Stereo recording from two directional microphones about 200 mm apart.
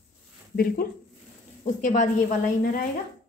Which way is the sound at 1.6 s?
40° left (ahead or behind).